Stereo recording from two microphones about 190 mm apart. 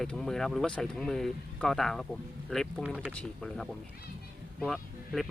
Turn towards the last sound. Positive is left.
turn(degrees=0)  # may be behind; listen again after turning